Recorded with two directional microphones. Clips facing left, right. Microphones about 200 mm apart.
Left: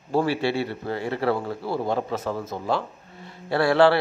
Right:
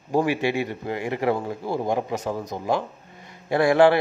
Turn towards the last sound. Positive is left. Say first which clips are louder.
# right 1 dB
turn(degrees=-15)  # may be behind; listen again after turning